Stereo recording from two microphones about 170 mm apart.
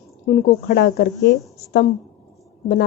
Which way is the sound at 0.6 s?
75° left (ahead or behind).